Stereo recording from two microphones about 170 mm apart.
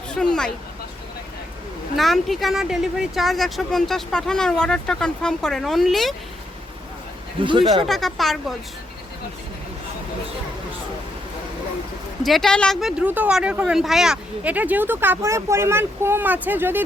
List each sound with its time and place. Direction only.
0.1 s speech: 5° left (ahead or behind)
2.0 s speech: centre (ahead or behind)
7.4 s speech: 30° right (ahead or behind)
7.9 s speech: centre (ahead or behind)
12.2 s speech: centre (ahead or behind)